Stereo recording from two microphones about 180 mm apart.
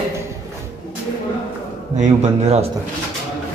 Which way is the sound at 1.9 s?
40° right (ahead or behind).